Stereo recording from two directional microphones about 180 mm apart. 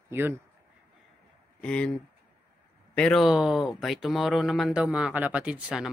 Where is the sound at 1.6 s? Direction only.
5° left (ahead or behind).